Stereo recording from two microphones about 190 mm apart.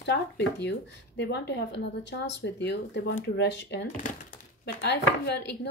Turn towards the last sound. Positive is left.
turn(degrees=60)  # may be behind; listen again after turning